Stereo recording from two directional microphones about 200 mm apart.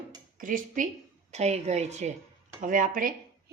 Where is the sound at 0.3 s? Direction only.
45° right (ahead or behind).